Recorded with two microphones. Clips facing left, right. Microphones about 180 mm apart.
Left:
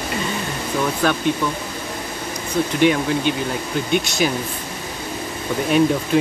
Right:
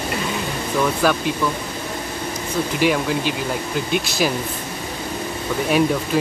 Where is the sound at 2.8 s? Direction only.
5° right (ahead or behind).